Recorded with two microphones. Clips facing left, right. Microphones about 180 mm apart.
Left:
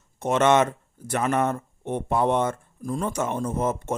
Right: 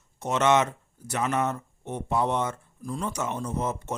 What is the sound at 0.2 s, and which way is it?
Speech, 50° left (ahead or behind).